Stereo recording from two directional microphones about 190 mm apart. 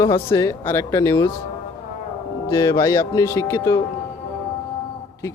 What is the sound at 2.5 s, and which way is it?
Speech, 15° left (ahead or behind).